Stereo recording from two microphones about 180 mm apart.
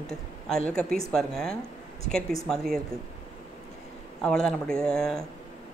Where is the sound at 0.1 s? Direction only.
5° left (ahead or behind).